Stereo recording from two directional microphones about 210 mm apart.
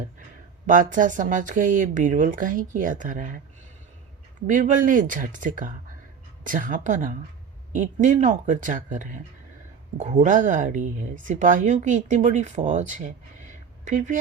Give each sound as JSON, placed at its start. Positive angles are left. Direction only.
{"t": 0.7, "sound": "a woman's voice", "side_deg": -40}
{"t": 4.4, "sound": "a woman's voice", "side_deg": -35}